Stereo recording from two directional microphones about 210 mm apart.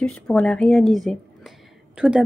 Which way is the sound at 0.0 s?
5° left (ahead or behind).